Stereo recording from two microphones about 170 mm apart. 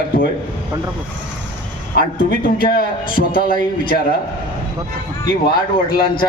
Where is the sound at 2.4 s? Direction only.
60° left (ahead or behind).